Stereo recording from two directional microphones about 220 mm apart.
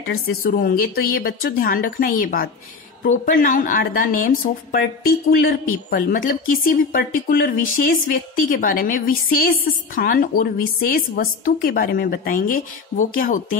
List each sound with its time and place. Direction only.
0.0 s speech: 40° left (ahead or behind)
5.4 s speech: 40° left (ahead or behind)